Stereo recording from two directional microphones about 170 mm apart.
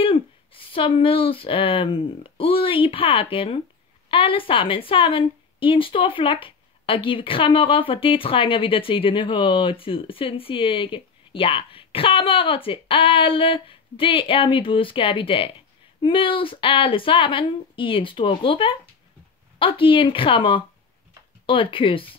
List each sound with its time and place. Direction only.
0.0 s a woman's voice: 30° left (ahead or behind)